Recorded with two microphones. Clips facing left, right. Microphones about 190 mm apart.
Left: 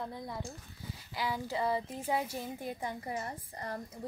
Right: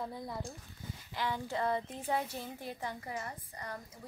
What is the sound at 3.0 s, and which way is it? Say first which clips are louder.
Speech: left 3 dB; 30° left (ahead or behind).